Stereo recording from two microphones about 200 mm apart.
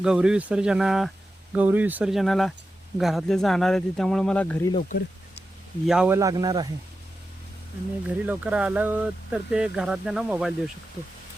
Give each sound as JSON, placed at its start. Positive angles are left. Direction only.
{"t": 0.0, "sound": "speech", "side_deg": -5}
{"t": 4.8, "sound": "speech", "side_deg": 40}
{"t": 5.8, "sound": "speech", "side_deg": -5}
{"t": 6.1, "sound": "a man's voice", "side_deg": -20}
{"t": 8.3, "sound": "speech", "side_deg": -5}